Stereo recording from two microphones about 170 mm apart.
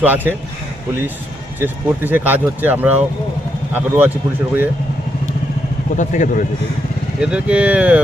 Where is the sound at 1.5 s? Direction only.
10° right (ahead or behind).